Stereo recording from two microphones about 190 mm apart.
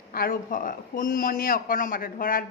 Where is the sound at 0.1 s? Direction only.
50° left (ahead or behind).